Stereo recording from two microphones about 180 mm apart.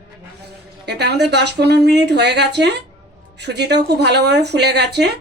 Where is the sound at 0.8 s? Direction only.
70° right (ahead or behind).